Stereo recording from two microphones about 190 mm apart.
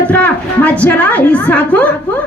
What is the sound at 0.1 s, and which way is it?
A woman's voice, 5° left (ahead or behind).